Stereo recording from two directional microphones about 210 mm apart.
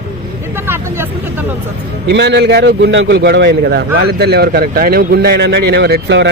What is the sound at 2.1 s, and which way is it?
A man's voice, 55° right (ahead or behind).